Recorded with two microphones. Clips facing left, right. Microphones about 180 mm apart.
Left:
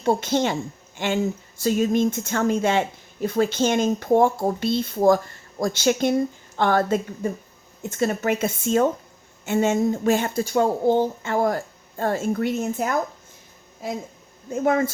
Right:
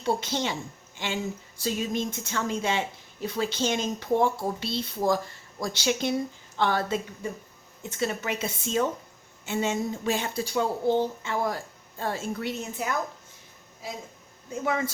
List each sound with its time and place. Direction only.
0.0 s speech: 50° left (ahead or behind)
14.5 s speech: 50° left (ahead or behind)